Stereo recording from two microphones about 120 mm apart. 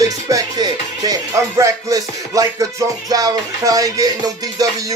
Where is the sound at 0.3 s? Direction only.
30° right (ahead or behind).